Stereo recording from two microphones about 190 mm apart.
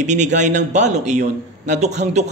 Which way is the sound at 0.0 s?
40° right (ahead or behind).